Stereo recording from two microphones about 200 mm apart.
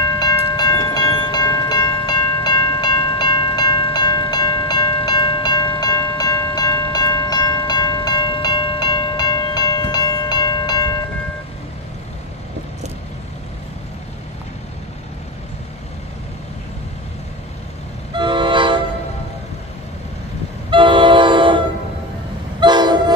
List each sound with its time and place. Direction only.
0.2 s train: 20° left (ahead or behind)
18.1 s train: 25° right (ahead or behind)
20.7 s train: 25° right (ahead or behind)